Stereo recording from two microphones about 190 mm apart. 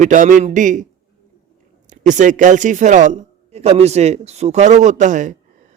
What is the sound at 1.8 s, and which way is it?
Speech, 40° right (ahead or behind).